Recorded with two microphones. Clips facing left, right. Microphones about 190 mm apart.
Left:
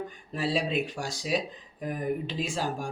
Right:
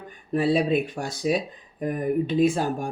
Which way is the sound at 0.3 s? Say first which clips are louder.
Right 7 dB; 55° right (ahead or behind).